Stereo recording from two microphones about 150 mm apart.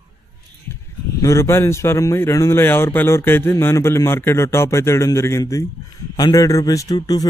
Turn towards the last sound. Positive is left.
turn(degrees=25)  # may be behind; listen again after turning